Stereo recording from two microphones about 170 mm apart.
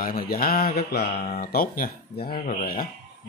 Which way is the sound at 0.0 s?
60° left (ahead or behind).